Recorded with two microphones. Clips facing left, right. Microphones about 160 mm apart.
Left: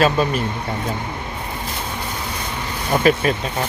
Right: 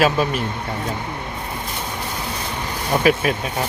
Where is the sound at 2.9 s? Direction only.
5° right (ahead or behind).